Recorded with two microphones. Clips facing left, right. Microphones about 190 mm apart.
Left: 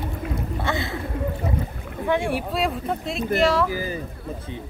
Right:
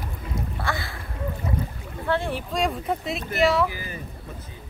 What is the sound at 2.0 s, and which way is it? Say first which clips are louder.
Speech: left 3 dB; 15° left (ahead or behind).